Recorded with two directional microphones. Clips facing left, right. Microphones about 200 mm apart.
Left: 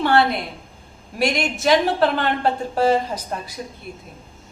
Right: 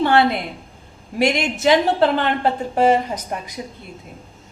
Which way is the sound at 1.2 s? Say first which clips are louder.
Right 3 dB; 20° right (ahead or behind).